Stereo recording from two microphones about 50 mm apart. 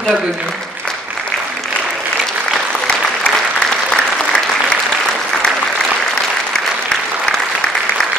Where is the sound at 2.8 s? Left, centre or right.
Centre.